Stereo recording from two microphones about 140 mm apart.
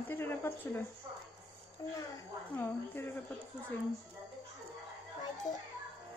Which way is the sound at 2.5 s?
15° left (ahead or behind).